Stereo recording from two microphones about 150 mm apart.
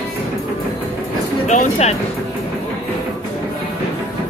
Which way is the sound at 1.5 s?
45° left (ahead or behind).